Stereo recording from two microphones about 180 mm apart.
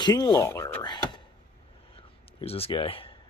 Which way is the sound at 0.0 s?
20° left (ahead or behind).